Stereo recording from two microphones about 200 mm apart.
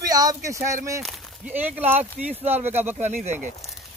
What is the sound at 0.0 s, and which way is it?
Speech, 20° right (ahead or behind).